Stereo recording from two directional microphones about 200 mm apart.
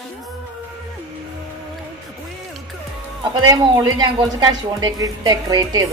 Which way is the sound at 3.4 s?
20° right (ahead or behind).